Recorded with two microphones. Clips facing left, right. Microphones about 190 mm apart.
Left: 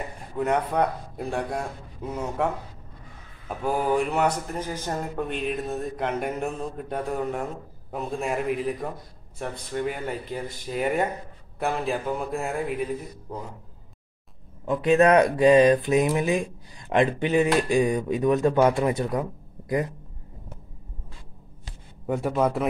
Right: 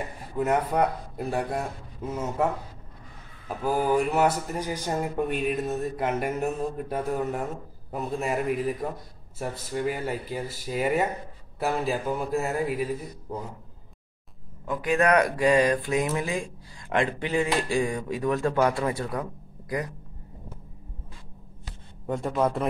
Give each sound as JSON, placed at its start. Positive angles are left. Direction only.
{"t": 0.4, "sound": "speech", "side_deg": -5}
{"t": 14.7, "sound": "speech", "side_deg": 25}
{"t": 22.0, "sound": "speech", "side_deg": 5}